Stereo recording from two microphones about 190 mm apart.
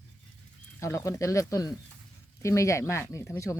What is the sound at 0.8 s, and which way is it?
Speech, 15° left (ahead or behind).